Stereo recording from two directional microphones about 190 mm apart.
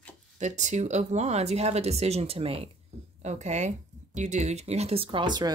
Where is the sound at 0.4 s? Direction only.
40° right (ahead or behind).